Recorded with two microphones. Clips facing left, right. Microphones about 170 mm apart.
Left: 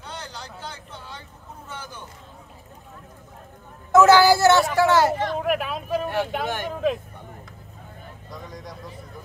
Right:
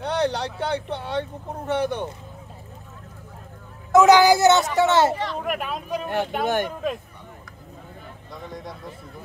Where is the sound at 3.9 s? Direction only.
15° right (ahead or behind).